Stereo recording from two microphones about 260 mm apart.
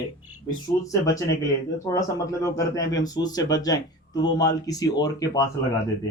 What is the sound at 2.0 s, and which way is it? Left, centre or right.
Speech, centre.